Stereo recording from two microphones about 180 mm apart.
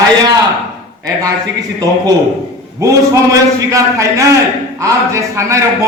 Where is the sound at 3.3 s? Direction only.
15° right (ahead or behind).